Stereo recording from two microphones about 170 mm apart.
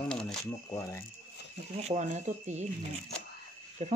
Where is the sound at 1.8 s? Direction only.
40° right (ahead or behind).